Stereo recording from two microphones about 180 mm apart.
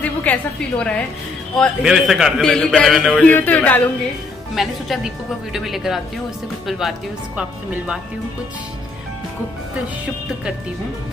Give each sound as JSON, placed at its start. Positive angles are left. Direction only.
{"t": 0.0, "sound": "a woman's voice", "side_deg": 10}